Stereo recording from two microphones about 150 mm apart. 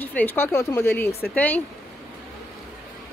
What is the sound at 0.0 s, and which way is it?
Speech, 10° left (ahead or behind).